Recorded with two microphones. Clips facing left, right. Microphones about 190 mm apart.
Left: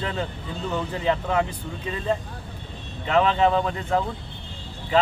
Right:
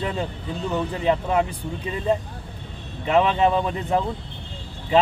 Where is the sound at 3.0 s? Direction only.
15° right (ahead or behind).